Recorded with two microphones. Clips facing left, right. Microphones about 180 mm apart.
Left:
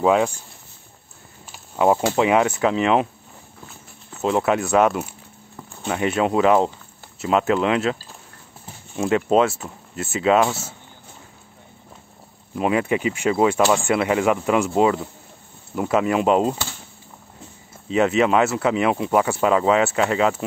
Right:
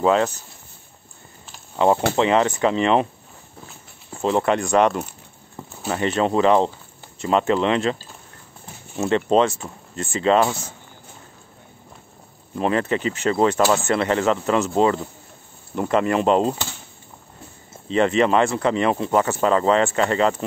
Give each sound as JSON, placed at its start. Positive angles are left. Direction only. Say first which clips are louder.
{"t": 0.0, "sound": "speech", "louder": "left 1 dB", "side_deg": 10}
{"t": 1.5, "sound": "a sound", "louder": "even", "side_deg": 10}
{"t": 2.1, "sound": "speech", "louder": "even", "side_deg": 10}
{"t": 4.2, "sound": "speech", "louder": "even", "side_deg": 5}
{"t": 5.6, "sound": "a sound", "louder": "right 3 dB", "side_deg": -25}
{"t": 5.9, "sound": "speech", "louder": "even", "side_deg": 10}
{"t": 12.5, "sound": "speech", "louder": "left 1 dB", "side_deg": 10}
{"t": 17.8, "sound": "speech", "louder": "even", "side_deg": 5}